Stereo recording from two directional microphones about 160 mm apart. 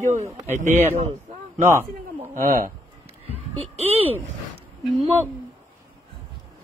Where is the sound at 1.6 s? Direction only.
15° right (ahead or behind).